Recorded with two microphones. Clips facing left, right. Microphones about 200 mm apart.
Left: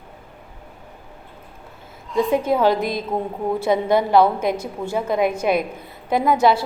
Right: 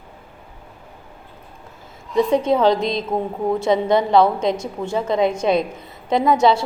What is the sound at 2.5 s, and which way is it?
A woman's voice, 5° left (ahead or behind).